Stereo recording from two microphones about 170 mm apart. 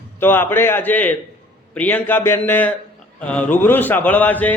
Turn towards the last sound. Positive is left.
turn(degrees=10)  # may be behind; listen again after turning